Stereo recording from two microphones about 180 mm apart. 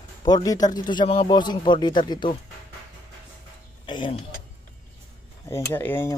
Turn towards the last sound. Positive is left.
turn(degrees=10)  # may be behind; listen again after turning